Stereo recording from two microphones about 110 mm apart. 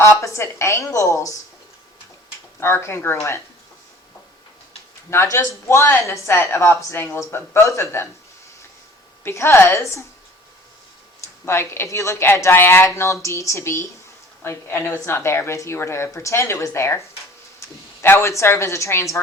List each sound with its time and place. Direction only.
0.0 s speech: 25° left (ahead or behind)
2.6 s speech: 25° left (ahead or behind)
5.1 s speech: 25° left (ahead or behind)
9.2 s speech: 25° left (ahead or behind)
11.4 s speech: 20° left (ahead or behind)